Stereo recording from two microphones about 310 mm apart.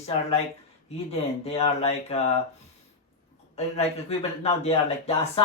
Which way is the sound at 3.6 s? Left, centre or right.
Centre.